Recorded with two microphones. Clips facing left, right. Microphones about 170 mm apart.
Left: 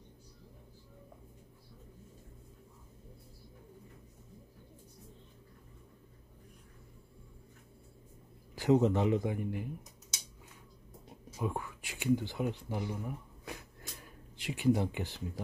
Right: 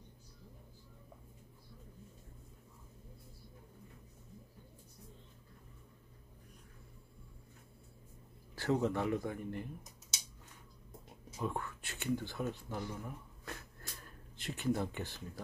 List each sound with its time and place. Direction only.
8.5 s speech: 20° left (ahead or behind)
11.3 s speech: 10° left (ahead or behind)
14.3 s speech: 15° left (ahead or behind)